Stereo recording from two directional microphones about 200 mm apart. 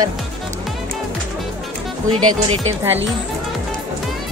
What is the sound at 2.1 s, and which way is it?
Speech, 90° right.